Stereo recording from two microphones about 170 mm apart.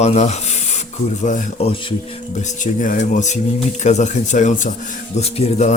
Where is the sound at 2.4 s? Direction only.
50° left (ahead or behind).